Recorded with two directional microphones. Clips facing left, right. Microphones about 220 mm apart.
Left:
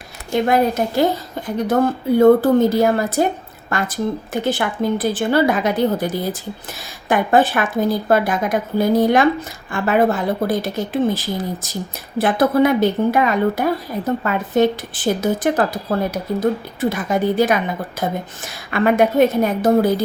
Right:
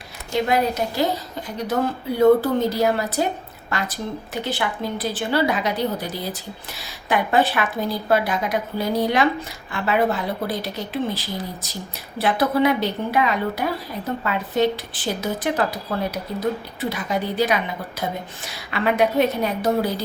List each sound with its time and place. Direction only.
0.3 s a woman's voice: 50° left (ahead or behind)